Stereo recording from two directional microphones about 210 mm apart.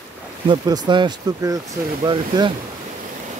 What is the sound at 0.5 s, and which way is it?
Speech, 20° right (ahead or behind).